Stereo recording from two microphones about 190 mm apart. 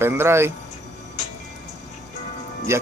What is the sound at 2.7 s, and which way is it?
Speech, 15° right (ahead or behind).